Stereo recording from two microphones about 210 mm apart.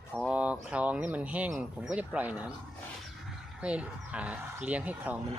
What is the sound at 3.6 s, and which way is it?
Speech, 5° right (ahead or behind).